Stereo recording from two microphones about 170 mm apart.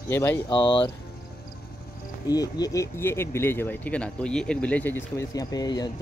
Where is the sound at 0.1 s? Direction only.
15° left (ahead or behind).